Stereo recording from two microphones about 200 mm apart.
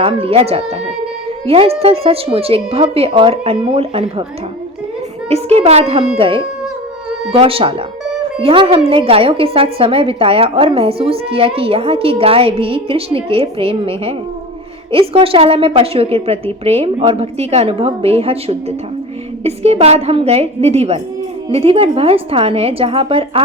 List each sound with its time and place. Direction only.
0.0 s a woman's voice: 30° right (ahead or behind)
5.3 s a woman's voice: 30° right (ahead or behind)